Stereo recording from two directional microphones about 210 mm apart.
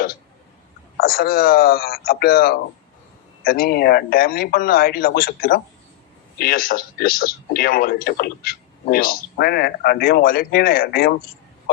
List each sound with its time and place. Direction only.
0.9 s a man's voice: 45° left (ahead or behind)